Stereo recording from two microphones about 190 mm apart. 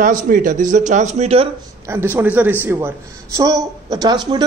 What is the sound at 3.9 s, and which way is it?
Speech, 20° right (ahead or behind).